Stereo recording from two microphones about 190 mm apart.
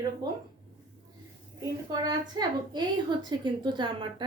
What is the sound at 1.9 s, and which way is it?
A woman's voice, 20° right (ahead or behind).